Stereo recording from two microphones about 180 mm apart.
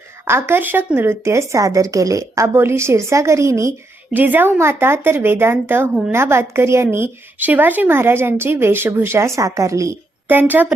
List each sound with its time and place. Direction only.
0.3 s speech: 15° right (ahead or behind)